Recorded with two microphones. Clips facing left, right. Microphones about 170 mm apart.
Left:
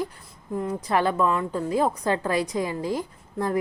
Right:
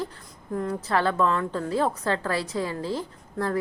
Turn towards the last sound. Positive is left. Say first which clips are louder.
# left 1 dB
turn(degrees=15)  # may be behind; listen again after turning